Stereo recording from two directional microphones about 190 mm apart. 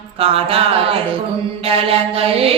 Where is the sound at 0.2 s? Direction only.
30° right (ahead or behind).